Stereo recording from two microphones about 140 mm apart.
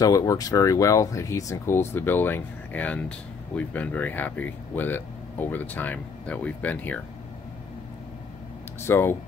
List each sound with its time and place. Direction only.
0.0 s speech: 25° left (ahead or behind); by 7.0 s 10° left (ahead or behind)
8.8 s speech: 15° left (ahead or behind)